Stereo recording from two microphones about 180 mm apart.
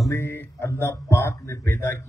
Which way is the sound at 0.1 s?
15° left (ahead or behind).